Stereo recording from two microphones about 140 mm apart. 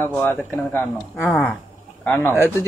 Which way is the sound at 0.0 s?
15° left (ahead or behind).